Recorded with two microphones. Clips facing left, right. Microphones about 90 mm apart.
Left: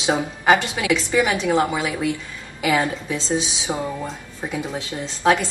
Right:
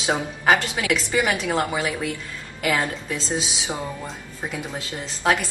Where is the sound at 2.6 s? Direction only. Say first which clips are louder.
Left 3 dB; 5° left (ahead or behind).